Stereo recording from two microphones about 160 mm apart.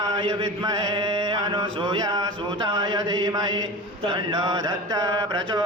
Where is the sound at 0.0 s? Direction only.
30° right (ahead or behind).